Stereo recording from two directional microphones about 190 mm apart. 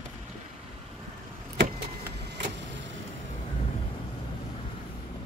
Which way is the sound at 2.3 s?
70° right (ahead or behind).